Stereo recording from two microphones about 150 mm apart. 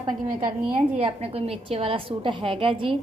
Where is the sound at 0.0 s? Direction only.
30° right (ahead or behind).